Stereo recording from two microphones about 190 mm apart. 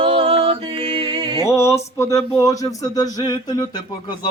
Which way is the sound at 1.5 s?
15° left (ahead or behind).